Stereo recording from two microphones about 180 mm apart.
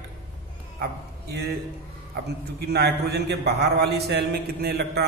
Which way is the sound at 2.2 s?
65° right (ahead or behind).